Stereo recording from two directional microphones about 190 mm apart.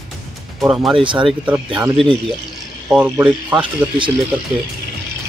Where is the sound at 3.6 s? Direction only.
25° right (ahead or behind).